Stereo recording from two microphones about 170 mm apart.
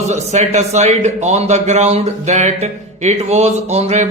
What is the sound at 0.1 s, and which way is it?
A man's voice, 45° right (ahead or behind).